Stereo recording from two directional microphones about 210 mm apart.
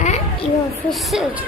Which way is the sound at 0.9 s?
Centre (ahead or behind).